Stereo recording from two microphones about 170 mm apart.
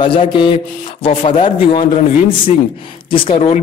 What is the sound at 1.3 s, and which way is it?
Speech, 30° left (ahead or behind).